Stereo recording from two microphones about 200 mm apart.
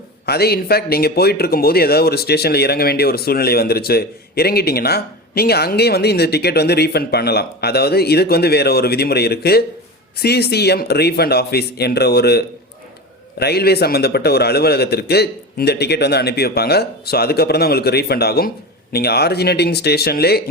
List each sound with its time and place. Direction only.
0.3 s speech: 50° left (ahead or behind)